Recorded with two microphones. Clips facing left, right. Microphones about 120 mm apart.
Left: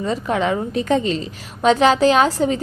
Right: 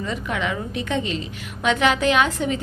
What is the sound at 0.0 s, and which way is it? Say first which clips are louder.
A woman's voice: left 6 dB; 35° left (ahead or behind).